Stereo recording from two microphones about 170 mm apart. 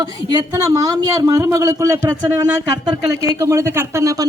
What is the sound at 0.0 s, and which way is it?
A woman's voice, 25° right (ahead or behind).